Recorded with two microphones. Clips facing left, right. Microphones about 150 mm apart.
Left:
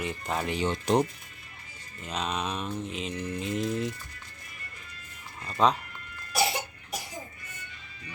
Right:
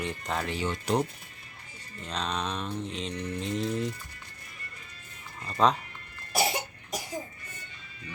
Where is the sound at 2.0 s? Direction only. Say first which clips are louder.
Left 1 dB; 5° left (ahead or behind).